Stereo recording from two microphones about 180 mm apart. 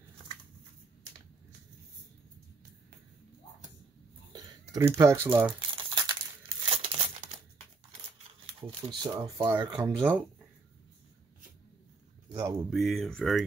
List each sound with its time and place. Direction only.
4.3 s speech: 15° right (ahead or behind)
5.6 s crumpling: 25° right (ahead or behind)
8.2 s speech: 30° right (ahead or behind)
12.3 s a sound: 20° right (ahead or behind)
12.6 s speech: centre (ahead or behind)